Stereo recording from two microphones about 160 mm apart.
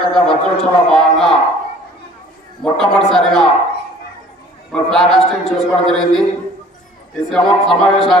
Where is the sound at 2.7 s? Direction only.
5° left (ahead or behind).